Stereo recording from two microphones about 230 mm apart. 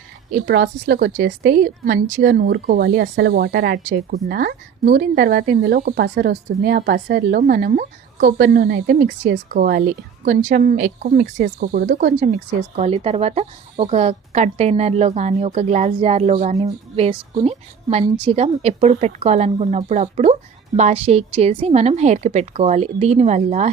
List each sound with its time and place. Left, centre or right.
0.4 s speech: right
12.7 s a woman's voice: right